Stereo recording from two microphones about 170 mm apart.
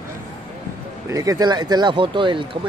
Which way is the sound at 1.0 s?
20° right (ahead or behind).